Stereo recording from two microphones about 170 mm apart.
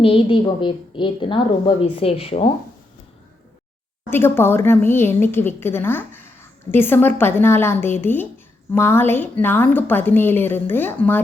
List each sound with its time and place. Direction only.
0.0 s a woman's voice: 30° left (ahead or behind)
4.1 s a woman's voice: 15° left (ahead or behind)